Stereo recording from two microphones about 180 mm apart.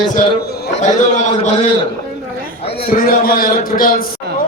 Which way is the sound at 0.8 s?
45° left (ahead or behind).